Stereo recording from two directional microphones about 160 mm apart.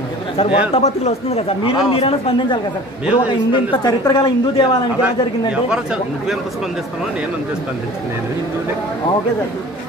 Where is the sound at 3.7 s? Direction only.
25° left (ahead or behind).